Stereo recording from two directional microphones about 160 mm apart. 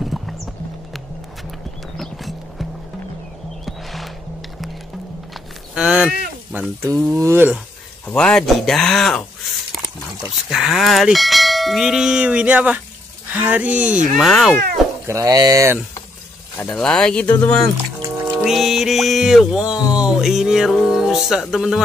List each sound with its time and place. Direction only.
0.0 s music: centre (ahead or behind)
3.6 s music: centre (ahead or behind)
5.8 s bell: 5° right (ahead or behind)
6.5 s speech: 10° right (ahead or behind)
8.1 s bell: 5° left (ahead or behind)
10.5 s bell: centre (ahead or behind)
13.3 s speech: 10° right (ahead or behind)
14.1 s bell: centre (ahead or behind)
15.0 s speech: 20° right (ahead or behind)
16.7 s bell: 5° left (ahead or behind)
18.3 s music: centre (ahead or behind)